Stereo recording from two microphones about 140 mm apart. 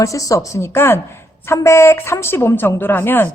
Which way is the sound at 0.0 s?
25° left (ahead or behind).